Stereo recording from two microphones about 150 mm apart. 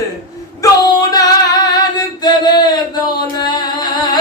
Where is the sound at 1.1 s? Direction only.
25° left (ahead or behind).